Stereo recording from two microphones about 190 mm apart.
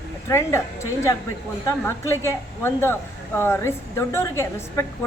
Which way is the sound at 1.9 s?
15° left (ahead or behind).